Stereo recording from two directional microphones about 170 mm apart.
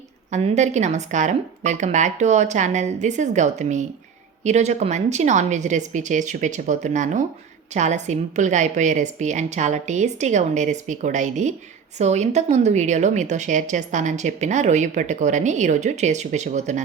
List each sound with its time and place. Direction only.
0.3 s a woman's voice: 45° right (ahead or behind)